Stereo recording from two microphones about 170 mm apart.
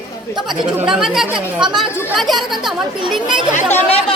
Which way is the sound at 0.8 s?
5° right (ahead or behind).